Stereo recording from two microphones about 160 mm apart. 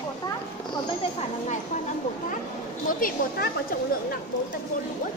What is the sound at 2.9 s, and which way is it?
Speech, 60° left (ahead or behind).